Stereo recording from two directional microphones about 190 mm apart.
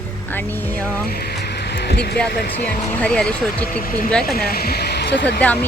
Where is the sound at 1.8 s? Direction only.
60° left (ahead or behind).